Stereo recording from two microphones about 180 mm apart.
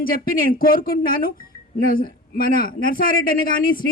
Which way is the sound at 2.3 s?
55° left (ahead or behind).